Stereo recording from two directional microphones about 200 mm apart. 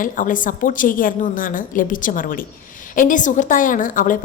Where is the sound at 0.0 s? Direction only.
40° left (ahead or behind).